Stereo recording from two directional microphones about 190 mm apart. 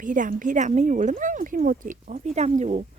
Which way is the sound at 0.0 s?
45° right (ahead or behind).